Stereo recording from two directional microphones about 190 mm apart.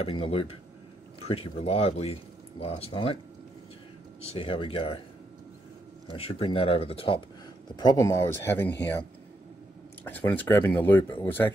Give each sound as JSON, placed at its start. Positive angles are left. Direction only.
{"t": 0.0, "sound": "speech", "side_deg": 30}
{"t": 4.3, "sound": "speech", "side_deg": 25}
{"t": 6.0, "sound": "speech", "side_deg": 30}
{"t": 10.0, "sound": "speech", "side_deg": 10}